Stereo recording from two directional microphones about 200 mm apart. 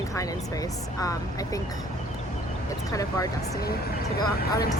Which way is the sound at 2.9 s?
15° left (ahead or behind).